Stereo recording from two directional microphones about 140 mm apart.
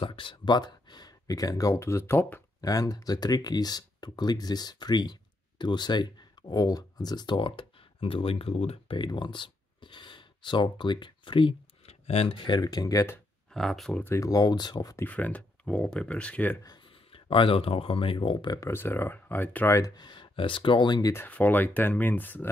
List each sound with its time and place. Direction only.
0.0 s speech: 35° left (ahead or behind); by 2.4 s 15° left (ahead or behind)
2.6 s speech: 25° left (ahead or behind); by 12.4 s 50° left (ahead or behind)
12.4 s speech: 30° left (ahead or behind)
13.5 s speech: centre (ahead or behind)
14.0 s speech: 20° left (ahead or behind)
15.0 s speech: 10° left (ahead or behind)
17.1 s speech: 40° left (ahead or behind)
18.6 s speech: 15° left (ahead or behind); by 21.1 s 30° left (ahead or behind)
21.1 s speech: 15° left (ahead or behind)